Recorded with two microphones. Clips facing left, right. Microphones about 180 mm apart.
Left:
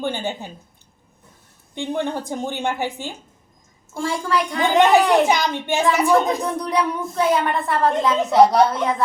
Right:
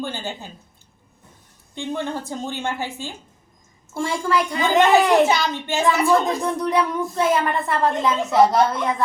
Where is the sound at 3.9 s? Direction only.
Centre (ahead or behind).